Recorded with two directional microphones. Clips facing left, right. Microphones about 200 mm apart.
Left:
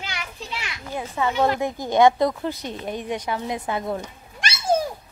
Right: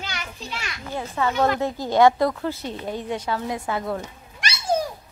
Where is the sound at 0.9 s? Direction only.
15° left (ahead or behind).